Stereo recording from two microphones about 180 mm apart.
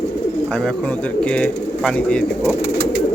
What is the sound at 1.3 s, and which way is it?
Speech, 5° left (ahead or behind).